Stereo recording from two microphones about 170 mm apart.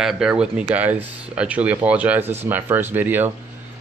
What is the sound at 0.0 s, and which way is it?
Speech, 5° right (ahead or behind).